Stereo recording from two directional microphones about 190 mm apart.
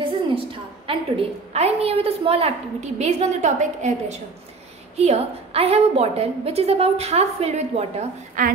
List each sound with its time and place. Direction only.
0.0 s a woman's voice: 30° right (ahead or behind)